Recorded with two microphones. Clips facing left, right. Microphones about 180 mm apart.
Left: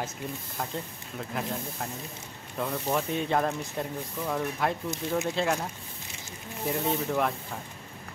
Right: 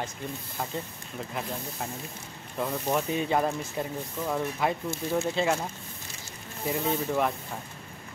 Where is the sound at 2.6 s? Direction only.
5° right (ahead or behind).